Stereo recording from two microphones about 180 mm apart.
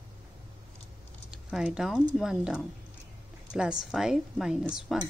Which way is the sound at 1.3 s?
5° right (ahead or behind).